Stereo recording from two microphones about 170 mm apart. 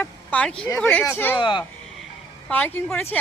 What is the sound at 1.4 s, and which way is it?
Speech, 30° left (ahead or behind).